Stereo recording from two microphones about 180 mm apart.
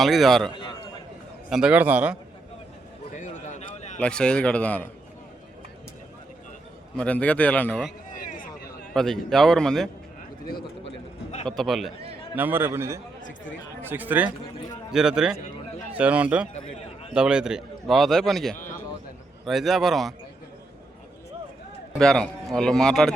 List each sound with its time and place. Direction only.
0.0 s a man's voice: centre (ahead or behind)
0.5 s a sound: 25° left (ahead or behind)
1.5 s a man's voice: 5° right (ahead or behind)
3.2 s a sound: 40° left (ahead or behind)
4.0 s a man's voice: 5° left (ahead or behind)
6.9 s a man's voice: 5° left (ahead or behind)
8.1 s a sound: 50° left (ahead or behind)
8.9 s a man's voice: 5° left (ahead or behind)
11.4 s a man's voice: centre (ahead or behind)
12.4 s a man's voice: 10° right (ahead or behind)
16.6 s a sound: 35° left (ahead or behind)
17.2 s a man's voice: 5° right (ahead or behind)
21.9 s a man's voice: 5° left (ahead or behind)